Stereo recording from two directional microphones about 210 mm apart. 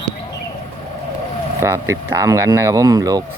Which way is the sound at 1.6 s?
15° right (ahead or behind).